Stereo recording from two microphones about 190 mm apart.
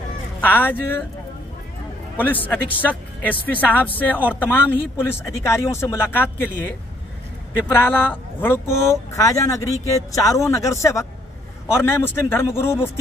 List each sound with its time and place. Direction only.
0.4 s speech: 10° left (ahead or behind)
2.1 s speech: 10° left (ahead or behind)
7.5 s speech: 10° left (ahead or behind)